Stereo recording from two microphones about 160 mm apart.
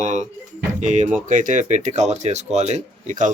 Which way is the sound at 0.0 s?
50° right (ahead or behind).